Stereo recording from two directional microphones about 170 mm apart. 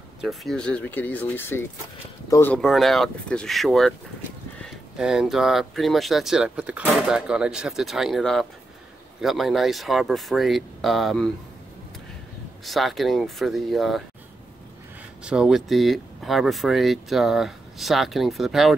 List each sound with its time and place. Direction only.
0.2 s speech: centre (ahead or behind); by 2.5 s 20° left (ahead or behind)
2.5 s speech: centre (ahead or behind)
4.9 s speech: 5° right (ahead or behind)
12.6 s speech: centre (ahead or behind)
15.2 s speech: 5° right (ahead or behind)